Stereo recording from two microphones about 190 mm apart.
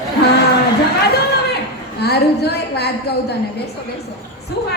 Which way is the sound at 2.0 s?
60° left (ahead or behind).